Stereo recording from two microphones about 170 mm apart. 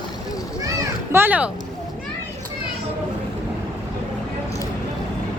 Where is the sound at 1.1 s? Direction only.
10° right (ahead or behind).